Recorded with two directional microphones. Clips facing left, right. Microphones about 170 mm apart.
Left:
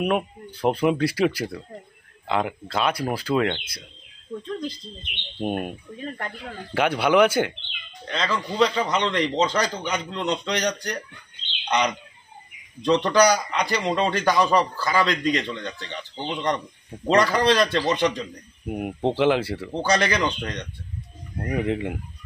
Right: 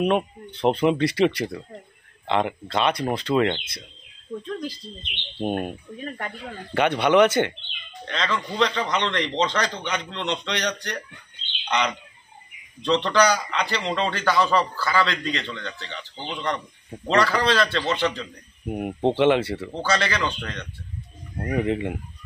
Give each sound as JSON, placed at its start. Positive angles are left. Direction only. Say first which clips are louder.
{"t": 0.6, "sound": "speech", "louder": "right 1 dB", "side_deg": 0}
{"t": 5.4, "sound": "a man's voice", "louder": "right 1 dB", "side_deg": 5}
{"t": 12.8, "sound": "a man's voice", "louder": "left 2 dB", "side_deg": 10}
{"t": 18.7, "sound": "speech", "louder": "right 2 dB", "side_deg": 0}
{"t": 19.7, "sound": "a man's voice", "louder": "left 4 dB", "side_deg": 15}
{"t": 21.5, "sound": "speech", "louder": "right 1 dB", "side_deg": 0}